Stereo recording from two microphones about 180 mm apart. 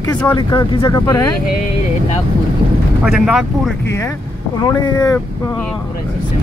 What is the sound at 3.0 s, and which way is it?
Speech, 5° right (ahead or behind).